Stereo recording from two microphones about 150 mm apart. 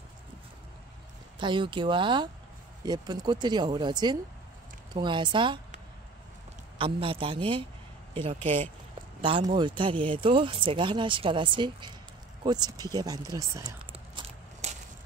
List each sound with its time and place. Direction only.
1.4 s speech: 30° right (ahead or behind)
6.8 s speech: 35° right (ahead or behind)
14.2 s walk: 45° right (ahead or behind)